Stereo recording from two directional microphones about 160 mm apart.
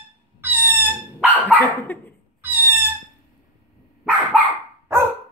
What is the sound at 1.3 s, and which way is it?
Dog, 10° left (ahead or behind).